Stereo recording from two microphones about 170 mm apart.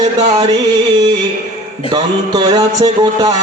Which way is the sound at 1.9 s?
25° right (ahead or behind).